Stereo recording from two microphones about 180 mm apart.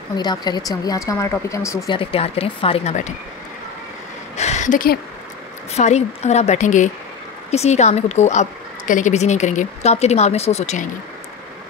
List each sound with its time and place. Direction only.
0.1 s speech: 25° left (ahead or behind)
2.0 s a woman's voice: 35° left (ahead or behind)
4.4 s a sound: 40° left (ahead or behind)
5.7 s a woman's voice: 35° left (ahead or behind)